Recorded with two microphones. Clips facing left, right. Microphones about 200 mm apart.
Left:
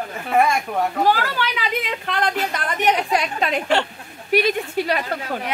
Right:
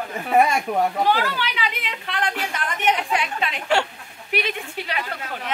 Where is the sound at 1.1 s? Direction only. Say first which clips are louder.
Left 2 dB; 45° left (ahead or behind).